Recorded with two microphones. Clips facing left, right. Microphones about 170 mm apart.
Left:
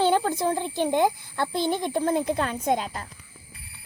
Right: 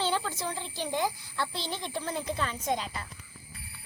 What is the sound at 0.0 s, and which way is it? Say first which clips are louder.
A child's voice: left 9 dB; 50° left (ahead or behind).